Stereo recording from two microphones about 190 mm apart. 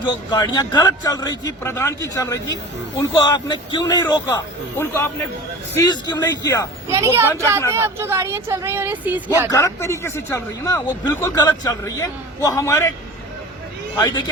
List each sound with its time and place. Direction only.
0.3 s a man's voice: 20° left (ahead or behind)
5.7 s a man's voice: 20° left (ahead or behind)
6.8 s speech: 15° right (ahead or behind)
9.5 s a man's voice: 15° left (ahead or behind)
13.9 s a man's voice: 20° left (ahead or behind)